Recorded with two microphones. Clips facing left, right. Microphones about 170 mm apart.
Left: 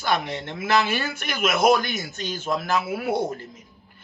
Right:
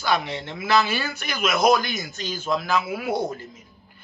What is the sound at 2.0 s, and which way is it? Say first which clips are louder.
Speech: even; 25° left (ahead or behind).